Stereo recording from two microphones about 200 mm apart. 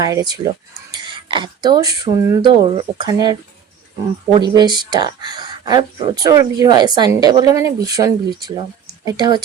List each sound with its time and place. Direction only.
0.0 s a woman's voice: 20° right (ahead or behind)
4.4 s a woman's voice: 20° right (ahead or behind)